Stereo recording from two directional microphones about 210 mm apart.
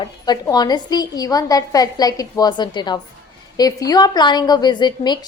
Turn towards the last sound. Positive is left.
turn(degrees=20)  # may be behind; listen again after turning